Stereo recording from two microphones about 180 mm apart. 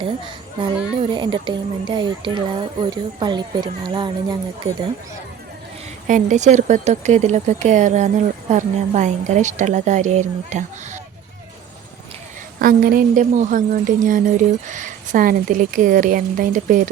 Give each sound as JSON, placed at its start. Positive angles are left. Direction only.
{"t": 0.9, "sound": "speech", "side_deg": -25}
{"t": 6.1, "sound": "speech", "side_deg": -45}
{"t": 12.5, "sound": "a woman's voice", "side_deg": -50}